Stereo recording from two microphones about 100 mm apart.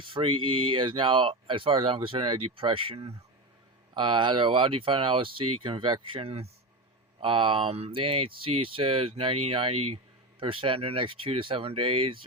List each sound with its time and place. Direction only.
0.0 s speech: 60° right (ahead or behind)
3.9 s speech: 55° right (ahead or behind); by 6.5 s 85° right
7.2 s speech: 60° right (ahead or behind); by 10.0 s 75° right (ahead or behind)
10.4 s speech: 60° right (ahead or behind)